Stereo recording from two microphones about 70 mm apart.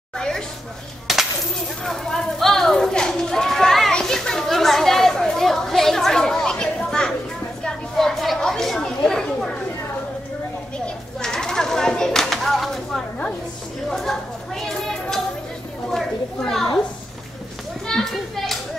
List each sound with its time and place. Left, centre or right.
1.1 s coin: centre
1.9 s speech: centre
3.9 s children playing: centre
7.6 s chatter: centre
11.1 s a sound: centre
15.9 s children playing: centre
17.8 s children playing: centre